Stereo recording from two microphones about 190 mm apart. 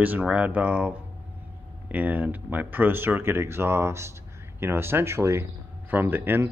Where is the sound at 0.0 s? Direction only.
10° right (ahead or behind).